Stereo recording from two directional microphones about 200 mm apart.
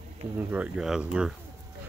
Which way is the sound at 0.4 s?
10° right (ahead or behind).